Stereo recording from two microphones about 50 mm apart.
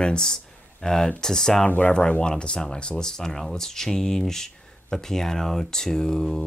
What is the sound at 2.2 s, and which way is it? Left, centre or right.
Speech, centre.